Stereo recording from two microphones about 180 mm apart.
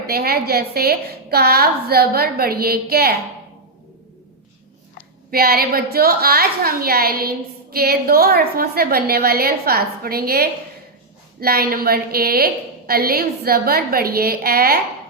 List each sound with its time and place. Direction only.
0.1 s a woman's voice: 60° right (ahead or behind)
5.3 s a woman's voice: 55° right (ahead or behind)